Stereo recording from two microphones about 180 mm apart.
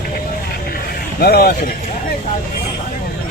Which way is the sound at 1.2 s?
60° left (ahead or behind).